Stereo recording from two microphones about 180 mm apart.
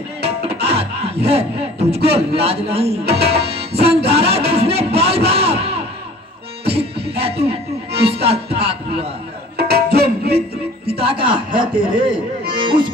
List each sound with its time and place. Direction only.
0.3 s music: 35° right (ahead or behind)
9.6 s music: 60° right (ahead or behind)
10.8 s speech: 30° right (ahead or behind)
12.5 s music: 25° right (ahead or behind)